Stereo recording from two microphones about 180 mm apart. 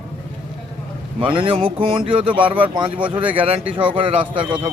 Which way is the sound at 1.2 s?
30° right (ahead or behind).